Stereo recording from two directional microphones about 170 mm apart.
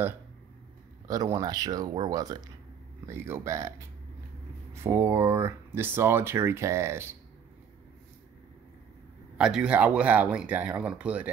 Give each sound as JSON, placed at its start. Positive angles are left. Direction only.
{"t": 1.0, "sound": "speech", "side_deg": -20}
{"t": 4.7, "sound": "speech", "side_deg": -15}
{"t": 9.4, "sound": "speech", "side_deg": -5}